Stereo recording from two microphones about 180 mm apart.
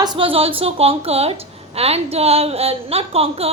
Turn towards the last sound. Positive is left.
turn(degrees=-35)  # may be behind; listen again after turning